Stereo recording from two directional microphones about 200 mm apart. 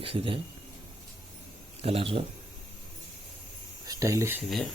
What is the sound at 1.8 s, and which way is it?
Speech, 30° right (ahead or behind).